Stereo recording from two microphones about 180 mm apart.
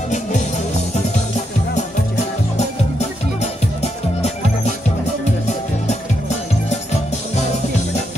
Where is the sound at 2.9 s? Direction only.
35° left (ahead or behind).